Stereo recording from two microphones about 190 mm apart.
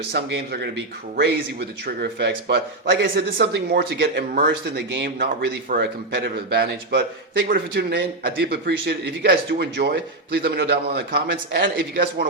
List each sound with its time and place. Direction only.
0.1 s speech: 65° right (ahead or behind)
2.0 s speech: 55° right (ahead or behind)